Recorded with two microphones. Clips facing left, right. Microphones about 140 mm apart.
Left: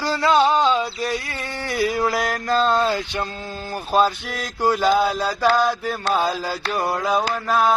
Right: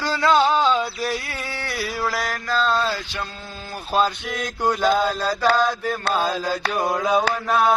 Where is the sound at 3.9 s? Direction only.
5° left (ahead or behind).